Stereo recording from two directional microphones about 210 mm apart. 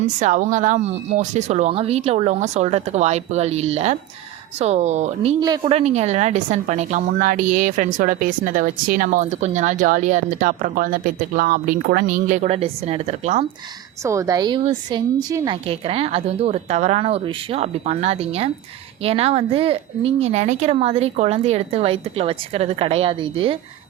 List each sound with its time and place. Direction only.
0.2 s a woman's voice: 35° right (ahead or behind)
5.4 s a woman's voice: 20° right (ahead or behind)
5.7 s a woman's voice: 30° right (ahead or behind)
14.0 s a woman's voice: 15° right (ahead or behind)